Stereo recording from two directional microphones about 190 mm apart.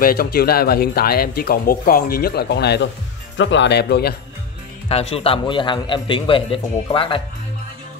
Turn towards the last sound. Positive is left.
turn(degrees=30)  # may be behind; listen again after turning